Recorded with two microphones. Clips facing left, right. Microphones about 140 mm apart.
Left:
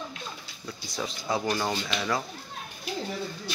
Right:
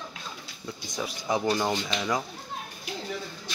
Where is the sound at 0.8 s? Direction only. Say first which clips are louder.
Right 1 dB; 20° right (ahead or behind).